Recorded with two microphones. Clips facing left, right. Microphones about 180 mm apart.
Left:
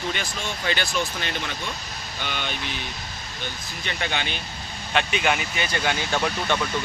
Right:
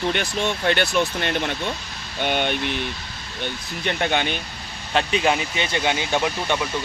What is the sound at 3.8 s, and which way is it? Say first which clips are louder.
Speech: right 6 dB; 55° right (ahead or behind).